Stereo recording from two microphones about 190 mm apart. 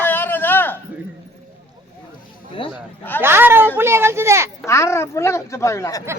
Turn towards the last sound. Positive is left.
turn(degrees=15)  # may be behind; listen again after turning